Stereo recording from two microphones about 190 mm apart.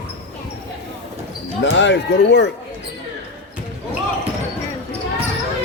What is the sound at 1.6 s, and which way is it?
Speech, 70° left (ahead or behind).